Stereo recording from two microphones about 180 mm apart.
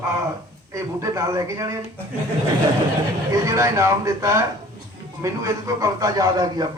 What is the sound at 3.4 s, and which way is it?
A man's voice, 15° right (ahead or behind).